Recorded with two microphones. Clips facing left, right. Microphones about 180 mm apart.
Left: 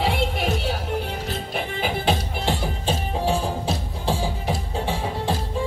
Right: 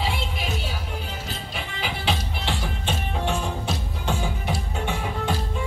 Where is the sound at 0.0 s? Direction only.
60° left (ahead or behind).